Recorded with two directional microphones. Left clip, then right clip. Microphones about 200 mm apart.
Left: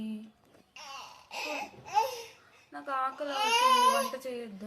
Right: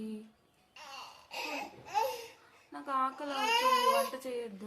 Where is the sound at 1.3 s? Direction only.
Centre (ahead or behind).